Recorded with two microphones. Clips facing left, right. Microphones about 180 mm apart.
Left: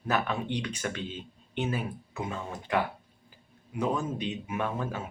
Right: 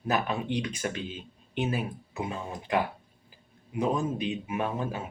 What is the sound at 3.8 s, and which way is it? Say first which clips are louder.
Speech: right 2 dB; 15° right (ahead or behind).